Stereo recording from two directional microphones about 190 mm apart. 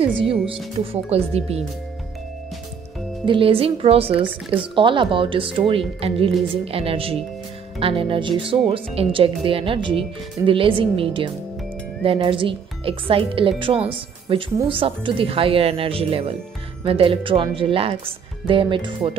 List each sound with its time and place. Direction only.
1.1 s speech: 35° right (ahead or behind)
3.3 s speech: 30° right (ahead or behind)